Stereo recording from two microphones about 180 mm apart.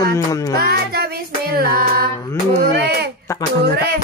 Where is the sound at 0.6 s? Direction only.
60° right (ahead or behind).